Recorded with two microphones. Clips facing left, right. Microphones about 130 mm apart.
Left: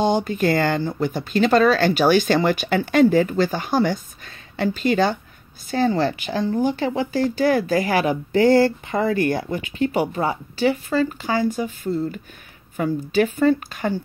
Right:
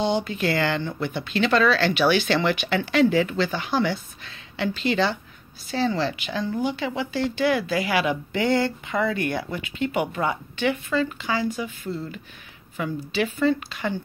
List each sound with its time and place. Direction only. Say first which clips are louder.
0.0 s speech: left 4 dB; 45° left (ahead or behind)